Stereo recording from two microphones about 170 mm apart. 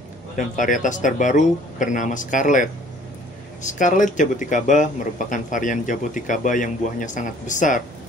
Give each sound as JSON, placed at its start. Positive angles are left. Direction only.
{"t": 0.4, "sound": "speech", "side_deg": 50}
{"t": 3.7, "sound": "speech", "side_deg": 45}